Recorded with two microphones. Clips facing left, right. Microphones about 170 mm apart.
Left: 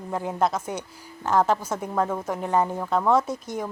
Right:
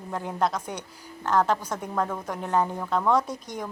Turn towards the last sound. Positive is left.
turn(degrees=5)  # may be behind; listen again after turning